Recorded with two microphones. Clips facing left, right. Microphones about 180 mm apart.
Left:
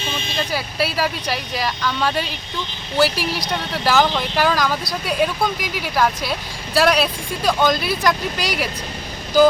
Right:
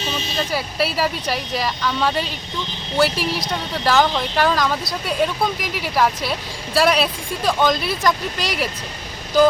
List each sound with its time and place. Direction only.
0.0 s vehicle: 40° right (ahead or behind)
0.3 s speech: centre (ahead or behind)